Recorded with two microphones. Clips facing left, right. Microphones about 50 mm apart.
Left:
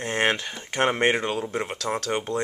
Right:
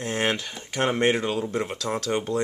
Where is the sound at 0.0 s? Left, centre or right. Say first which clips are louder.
Left 2 dB; centre.